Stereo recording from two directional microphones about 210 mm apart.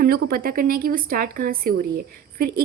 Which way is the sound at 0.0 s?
45° right (ahead or behind).